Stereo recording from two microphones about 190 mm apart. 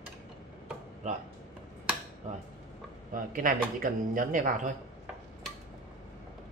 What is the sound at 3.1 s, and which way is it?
Speech, 45° right (ahead or behind).